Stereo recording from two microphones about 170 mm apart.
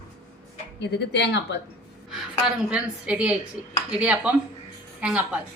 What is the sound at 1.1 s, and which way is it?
Speech, 90° left.